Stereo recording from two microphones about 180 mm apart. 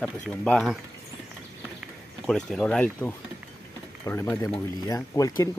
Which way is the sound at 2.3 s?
5° left (ahead or behind).